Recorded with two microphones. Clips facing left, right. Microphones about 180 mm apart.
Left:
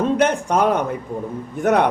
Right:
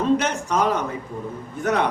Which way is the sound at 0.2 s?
55° left (ahead or behind).